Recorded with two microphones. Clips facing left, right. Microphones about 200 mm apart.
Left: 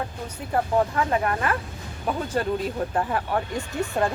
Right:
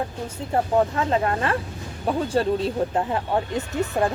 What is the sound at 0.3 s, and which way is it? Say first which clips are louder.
Speech: right 2 dB; 25° right (ahead or behind).